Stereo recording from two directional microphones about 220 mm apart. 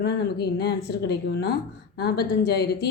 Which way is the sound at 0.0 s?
50° left (ahead or behind).